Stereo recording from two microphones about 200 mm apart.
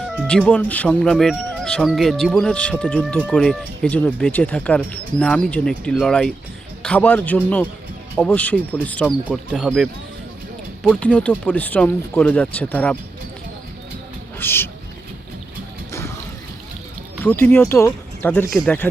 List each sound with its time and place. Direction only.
0.3 s speech: 5° left (ahead or behind)
11.0 s speech: 5° left (ahead or behind)
14.3 s a sound: 10° left (ahead or behind)
15.9 s music: 15° left (ahead or behind)
17.2 s speech: 10° left (ahead or behind)